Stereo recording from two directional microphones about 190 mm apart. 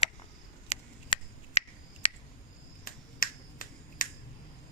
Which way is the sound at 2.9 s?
50° left (ahead or behind).